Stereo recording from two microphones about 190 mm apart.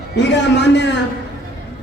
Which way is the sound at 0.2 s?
65° left (ahead or behind).